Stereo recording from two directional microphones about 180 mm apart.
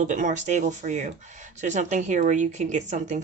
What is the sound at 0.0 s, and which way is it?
Speech, 45° right (ahead or behind).